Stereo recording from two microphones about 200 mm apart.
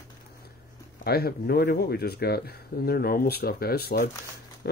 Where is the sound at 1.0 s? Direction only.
50° left (ahead or behind).